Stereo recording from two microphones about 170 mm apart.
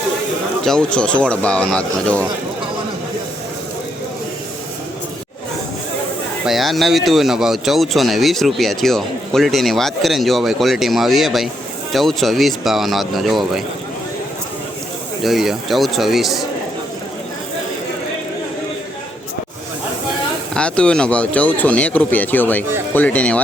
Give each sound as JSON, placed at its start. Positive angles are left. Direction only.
{"t": 0.6, "sound": "speech", "side_deg": 5}
{"t": 6.4, "sound": "speech", "side_deg": 0}
{"t": 15.2, "sound": "speech", "side_deg": 0}
{"t": 20.5, "sound": "speech", "side_deg": 5}